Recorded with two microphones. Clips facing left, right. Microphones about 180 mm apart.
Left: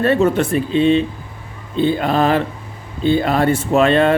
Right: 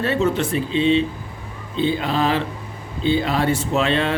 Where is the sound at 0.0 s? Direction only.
55° left (ahead or behind).